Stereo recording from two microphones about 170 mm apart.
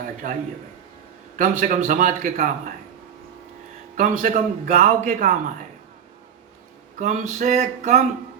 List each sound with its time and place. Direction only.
0.0 s a man's voice: 50° right (ahead or behind)
1.4 s a man's voice: 50° right (ahead or behind)
3.9 s a man's voice: 50° right (ahead or behind)
7.0 s a man's voice: 45° right (ahead or behind)